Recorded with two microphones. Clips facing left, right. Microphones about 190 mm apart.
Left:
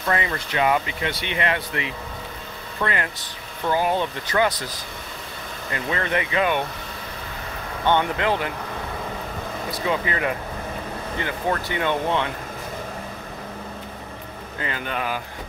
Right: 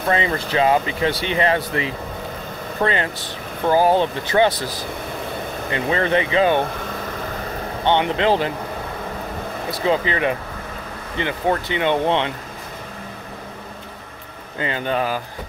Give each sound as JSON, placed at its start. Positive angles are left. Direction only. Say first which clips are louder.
{"t": 0.1, "sound": "speech", "louder": "right 4 dB", "side_deg": -30}
{"t": 5.7, "sound": "speech", "louder": "right 5 dB", "side_deg": -30}
{"t": 7.8, "sound": "speech", "louder": "right 3 dB", "side_deg": -20}
{"t": 9.8, "sound": "speech", "louder": "right 5 dB", "side_deg": -25}
{"t": 14.6, "sound": "speech", "louder": "right 6 dB", "side_deg": -30}